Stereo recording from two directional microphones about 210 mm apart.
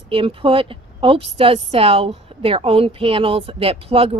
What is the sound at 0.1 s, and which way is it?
A woman's voice, 25° right (ahead or behind).